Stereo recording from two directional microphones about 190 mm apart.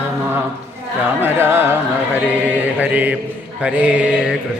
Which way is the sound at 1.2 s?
10° right (ahead or behind).